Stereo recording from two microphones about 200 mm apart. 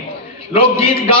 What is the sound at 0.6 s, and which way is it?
Speech, 25° left (ahead or behind).